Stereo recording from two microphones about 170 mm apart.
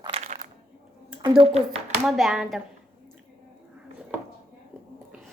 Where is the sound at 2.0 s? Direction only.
Centre (ahead or behind).